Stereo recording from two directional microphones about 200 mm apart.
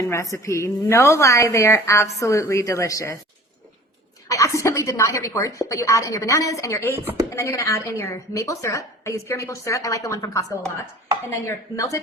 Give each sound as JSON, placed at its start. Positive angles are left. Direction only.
{"t": 0.0, "sound": "a woman's voice", "side_deg": 15}
{"t": 4.3, "sound": "a woman's voice", "side_deg": 15}